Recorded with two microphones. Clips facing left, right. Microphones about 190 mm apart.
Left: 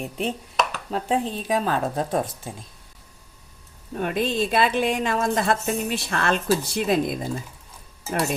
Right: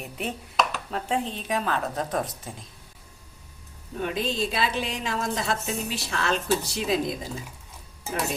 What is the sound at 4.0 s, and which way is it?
A woman's voice, 55° left (ahead or behind).